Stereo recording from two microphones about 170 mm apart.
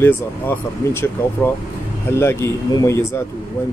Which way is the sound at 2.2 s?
15° left (ahead or behind).